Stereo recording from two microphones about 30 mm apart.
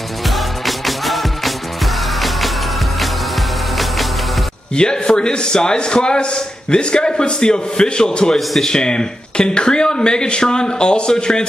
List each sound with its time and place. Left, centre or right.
0.3 s music: centre
4.7 s a man's voice: left